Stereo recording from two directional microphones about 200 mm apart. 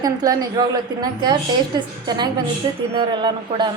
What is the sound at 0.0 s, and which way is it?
A woman's voice, 20° right (ahead or behind).